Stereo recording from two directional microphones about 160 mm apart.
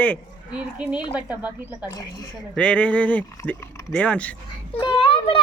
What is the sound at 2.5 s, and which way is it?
Speech, 10° left (ahead or behind).